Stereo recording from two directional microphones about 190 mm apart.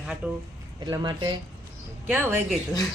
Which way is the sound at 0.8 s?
25° right (ahead or behind).